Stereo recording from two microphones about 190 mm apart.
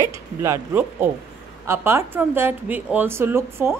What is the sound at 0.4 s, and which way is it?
A woman's voice, 10° right (ahead or behind).